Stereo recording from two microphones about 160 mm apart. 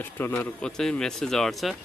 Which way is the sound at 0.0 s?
10° left (ahead or behind).